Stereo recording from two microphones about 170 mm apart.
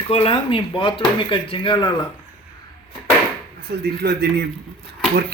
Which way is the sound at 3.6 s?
65° right (ahead or behind).